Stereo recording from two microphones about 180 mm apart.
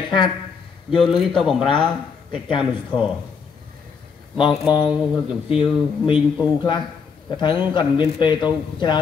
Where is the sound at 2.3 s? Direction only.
30° left (ahead or behind).